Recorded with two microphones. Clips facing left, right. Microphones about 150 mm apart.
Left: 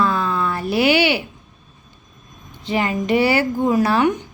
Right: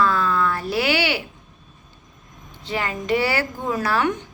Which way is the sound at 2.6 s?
15° left (ahead or behind).